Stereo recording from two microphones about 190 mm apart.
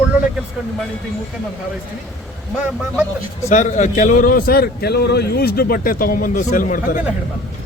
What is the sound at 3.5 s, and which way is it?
A man's voice, 40° left (ahead or behind).